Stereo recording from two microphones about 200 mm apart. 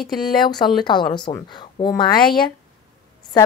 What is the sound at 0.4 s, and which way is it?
Speech, 20° left (ahead or behind).